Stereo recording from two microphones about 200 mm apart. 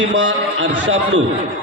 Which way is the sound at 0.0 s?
65° right (ahead or behind).